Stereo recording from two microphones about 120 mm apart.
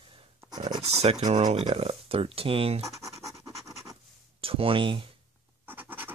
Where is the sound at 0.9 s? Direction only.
60° right (ahead or behind).